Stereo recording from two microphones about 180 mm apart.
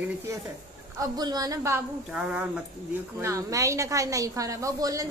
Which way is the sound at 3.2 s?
15° right (ahead or behind).